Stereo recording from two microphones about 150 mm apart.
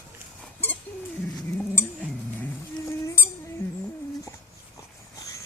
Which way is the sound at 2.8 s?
20° left (ahead or behind).